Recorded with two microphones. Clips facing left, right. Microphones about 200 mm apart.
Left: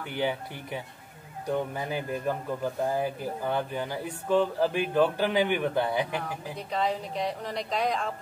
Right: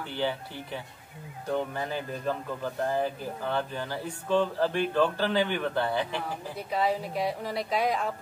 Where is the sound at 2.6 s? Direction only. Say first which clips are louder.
Left 1 dB; 10° left (ahead or behind).